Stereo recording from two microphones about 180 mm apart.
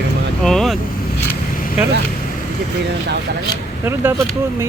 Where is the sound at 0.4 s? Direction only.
Centre (ahead or behind).